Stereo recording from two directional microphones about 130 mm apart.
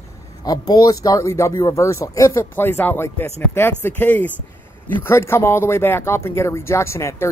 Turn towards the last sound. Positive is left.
turn(degrees=20)  # may be behind; listen again after turning